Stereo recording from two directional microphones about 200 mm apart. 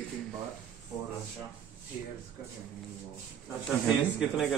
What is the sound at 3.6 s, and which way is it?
Speech, centre (ahead or behind).